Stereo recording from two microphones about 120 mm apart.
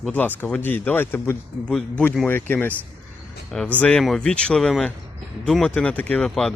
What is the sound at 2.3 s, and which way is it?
Speech, 15° left (ahead or behind).